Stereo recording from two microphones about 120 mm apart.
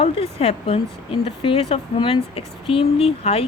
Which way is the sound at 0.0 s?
55° left (ahead or behind).